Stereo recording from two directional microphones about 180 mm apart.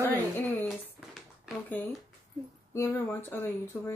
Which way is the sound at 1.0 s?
5° right (ahead or behind).